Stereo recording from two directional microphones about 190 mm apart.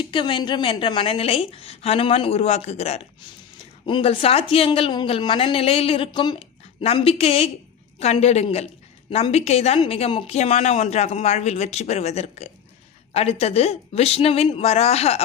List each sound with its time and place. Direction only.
0.0 s a woman's voice: 25° left (ahead or behind)